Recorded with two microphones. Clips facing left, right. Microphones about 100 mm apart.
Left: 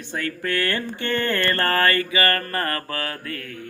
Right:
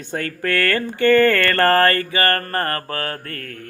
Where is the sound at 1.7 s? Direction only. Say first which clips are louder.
Right 4 dB; 40° right (ahead or behind).